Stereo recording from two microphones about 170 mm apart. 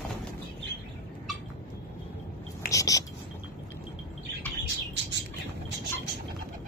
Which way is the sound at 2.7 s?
20° left (ahead or behind).